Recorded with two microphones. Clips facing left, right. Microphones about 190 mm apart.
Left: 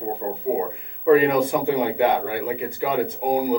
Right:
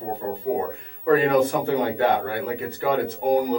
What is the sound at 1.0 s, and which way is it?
Speech, 15° left (ahead or behind).